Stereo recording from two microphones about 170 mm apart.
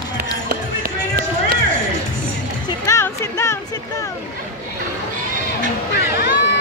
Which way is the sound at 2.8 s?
20° left (ahead or behind).